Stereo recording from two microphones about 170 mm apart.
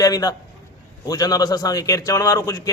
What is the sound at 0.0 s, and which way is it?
A man's voice, 20° left (ahead or behind).